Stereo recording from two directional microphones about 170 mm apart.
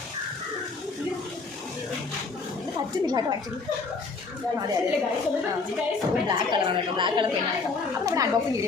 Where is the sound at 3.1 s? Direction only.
20° right (ahead or behind).